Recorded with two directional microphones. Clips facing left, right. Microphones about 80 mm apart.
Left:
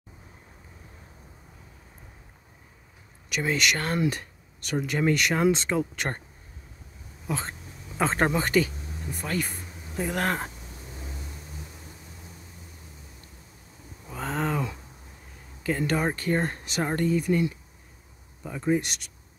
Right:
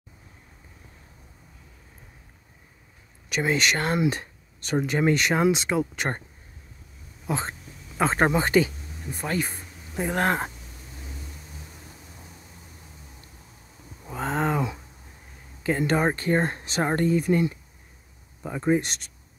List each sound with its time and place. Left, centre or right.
3.3 s speech: right
5.4 s speech: centre
5.9 s speech: right
7.2 s speech: right
8.0 s speech: centre; by 10.5 s right
14.0 s a sound: right
15.9 s speech: right